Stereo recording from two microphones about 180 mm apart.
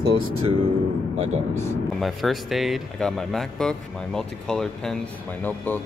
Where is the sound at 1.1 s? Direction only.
40° right (ahead or behind).